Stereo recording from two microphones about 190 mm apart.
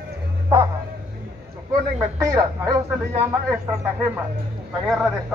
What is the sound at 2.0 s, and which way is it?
Speech, 15° right (ahead or behind).